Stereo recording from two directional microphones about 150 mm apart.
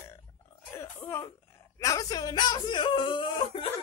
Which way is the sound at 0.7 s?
15° left (ahead or behind).